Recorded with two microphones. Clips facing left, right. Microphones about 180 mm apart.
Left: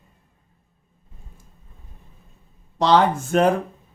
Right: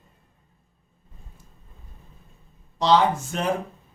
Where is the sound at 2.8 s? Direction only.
55° left (ahead or behind).